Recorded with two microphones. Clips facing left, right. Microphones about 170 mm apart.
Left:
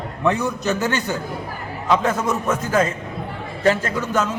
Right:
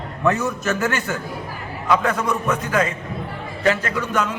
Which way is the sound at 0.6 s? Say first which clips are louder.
Left 1 dB; 20° left (ahead or behind).